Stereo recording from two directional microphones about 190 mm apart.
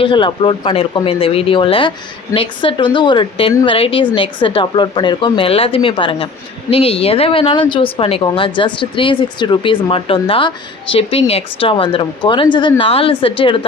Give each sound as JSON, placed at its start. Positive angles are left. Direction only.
{"t": 0.0, "sound": "a woman's voice", "side_deg": 25}